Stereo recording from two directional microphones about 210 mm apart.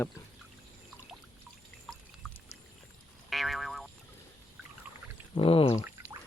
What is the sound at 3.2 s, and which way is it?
Boing, centre (ahead or behind).